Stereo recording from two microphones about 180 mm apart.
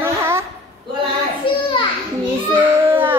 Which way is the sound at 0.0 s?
15° right (ahead or behind).